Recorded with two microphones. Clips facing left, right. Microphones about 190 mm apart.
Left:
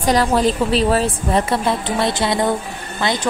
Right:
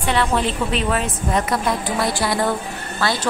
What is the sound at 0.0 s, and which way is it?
A woman's voice, 35° left (ahead or behind).